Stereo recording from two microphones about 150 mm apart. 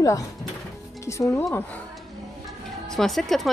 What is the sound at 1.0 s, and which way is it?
Speech, 20° left (ahead or behind).